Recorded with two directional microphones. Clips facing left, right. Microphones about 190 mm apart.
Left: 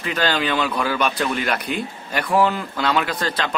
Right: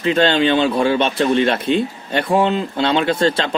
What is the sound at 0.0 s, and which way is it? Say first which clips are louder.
Speech: right 7 dB; 25° right (ahead or behind).